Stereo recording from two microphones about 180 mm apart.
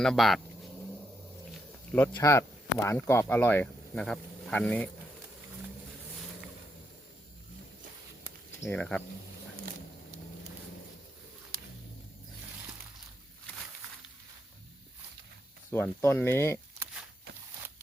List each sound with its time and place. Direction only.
0.0 s speech: centre (ahead or behind)
2.1 s speech: 15° left (ahead or behind)
8.6 s speech: 5° left (ahead or behind)
11.5 s a sound: 55° right (ahead or behind)
15.7 s speech: 15° left (ahead or behind)